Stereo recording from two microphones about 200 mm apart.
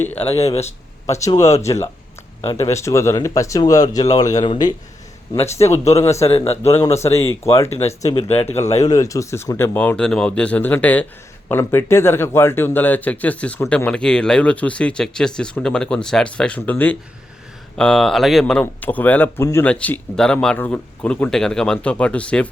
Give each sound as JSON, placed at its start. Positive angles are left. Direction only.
{"t": 0.0, "sound": "speech", "side_deg": 10}
{"t": 0.3, "sound": "speech", "side_deg": 30}
{"t": 1.1, "sound": "speech", "side_deg": 15}
{"t": 7.8, "sound": "speech", "side_deg": 30}
{"t": 8.8, "sound": "speech", "side_deg": 15}